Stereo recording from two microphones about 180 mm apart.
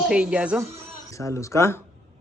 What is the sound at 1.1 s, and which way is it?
Speech, 15° left (ahead or behind).